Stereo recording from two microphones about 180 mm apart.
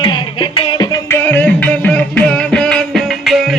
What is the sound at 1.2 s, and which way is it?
Music, 10° left (ahead or behind).